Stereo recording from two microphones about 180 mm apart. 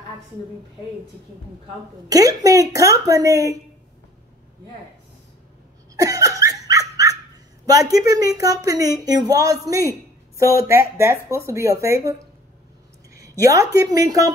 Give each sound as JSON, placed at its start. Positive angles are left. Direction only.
{"t": 2.0, "sound": "speech", "side_deg": -20}
{"t": 5.9, "sound": "laughter", "side_deg": -20}
{"t": 7.9, "sound": "speech", "side_deg": -20}
{"t": 13.1, "sound": "a woman's voice", "side_deg": -20}